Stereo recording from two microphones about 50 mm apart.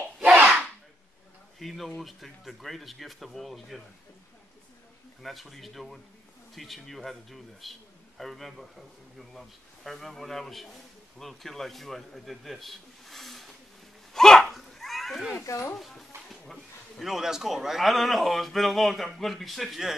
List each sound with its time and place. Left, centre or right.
0.4 s a sound: right
1.6 s a man's voice: centre
5.2 s a man's voice: centre
14.1 s dog: centre
15.5 s speech: left
15.8 s a man's voice: centre